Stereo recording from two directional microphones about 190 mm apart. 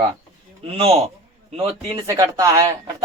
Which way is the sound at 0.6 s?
30° right (ahead or behind).